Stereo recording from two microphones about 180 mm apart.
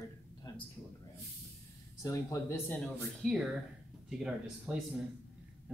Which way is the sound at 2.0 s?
15° left (ahead or behind).